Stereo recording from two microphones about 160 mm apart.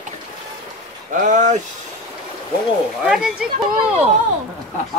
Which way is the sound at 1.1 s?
55° right (ahead or behind).